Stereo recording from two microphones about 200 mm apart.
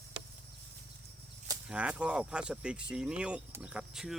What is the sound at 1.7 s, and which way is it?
Speech, 5° right (ahead or behind).